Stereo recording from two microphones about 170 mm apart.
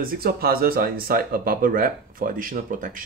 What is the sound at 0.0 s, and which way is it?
Speech, 60° right (ahead or behind).